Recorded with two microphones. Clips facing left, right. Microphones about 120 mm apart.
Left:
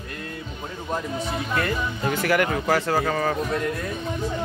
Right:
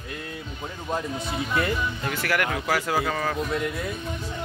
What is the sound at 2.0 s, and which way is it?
Speech, 15° left (ahead or behind).